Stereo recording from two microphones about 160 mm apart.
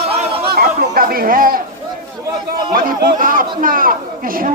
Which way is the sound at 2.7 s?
65° right (ahead or behind).